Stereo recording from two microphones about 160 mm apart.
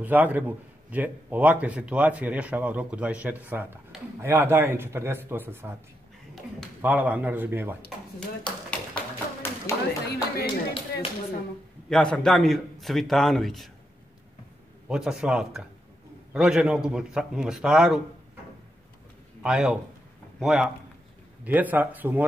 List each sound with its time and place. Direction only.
0.0 s a man's voice: 10° right (ahead or behind)
6.8 s a man's voice: 10° right (ahead or behind)
8.6 s a sound: 10° left (ahead or behind)
10.1 s speech: 30° left (ahead or behind)
11.9 s a man's voice: 5° left (ahead or behind)
14.9 s a man's voice: 5° right (ahead or behind)
19.4 s a man's voice: 5° right (ahead or behind)